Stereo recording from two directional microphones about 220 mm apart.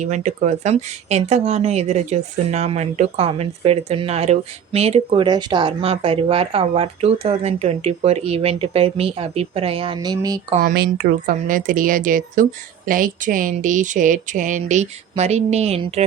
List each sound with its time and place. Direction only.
0.0 s speech: 35° right (ahead or behind); by 10.4 s 15° right (ahead or behind)
10.5 s speech: 40° right (ahead or behind)